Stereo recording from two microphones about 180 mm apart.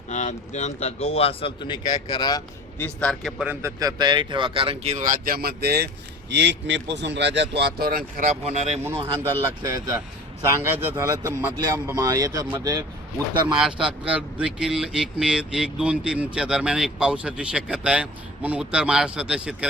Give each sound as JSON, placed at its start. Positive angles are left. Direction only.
{"t": 0.1, "sound": "speech", "side_deg": 40}
{"t": 2.7, "sound": "speech", "side_deg": 10}
{"t": 3.8, "sound": "speech", "side_deg": -20}
{"t": 6.3, "sound": "speech", "side_deg": -80}
{"t": 8.4, "sound": "speech", "side_deg": -35}
{"t": 10.4, "sound": "speech", "side_deg": -15}
{"t": 13.6, "sound": "speech", "side_deg": -5}